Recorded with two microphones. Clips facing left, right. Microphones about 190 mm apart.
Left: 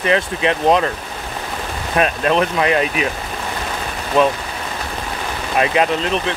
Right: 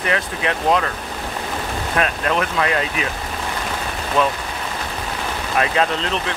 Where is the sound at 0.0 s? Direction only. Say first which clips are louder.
Left 5 dB; 20° left (ahead or behind).